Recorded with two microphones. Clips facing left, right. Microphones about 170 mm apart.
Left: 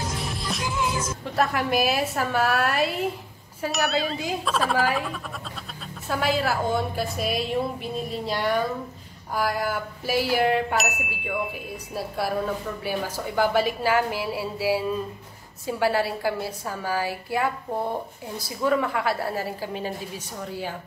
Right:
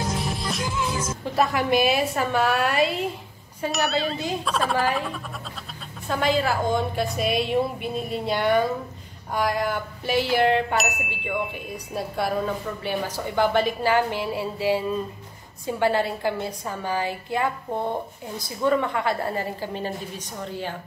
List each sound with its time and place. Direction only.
0.5 s music: centre (ahead or behind)
1.2 s chime: centre (ahead or behind)
20.3 s a woman's voice: 5° left (ahead or behind)